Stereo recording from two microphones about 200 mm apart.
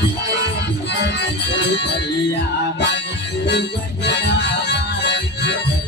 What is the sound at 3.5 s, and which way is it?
Music, 60° left (ahead or behind).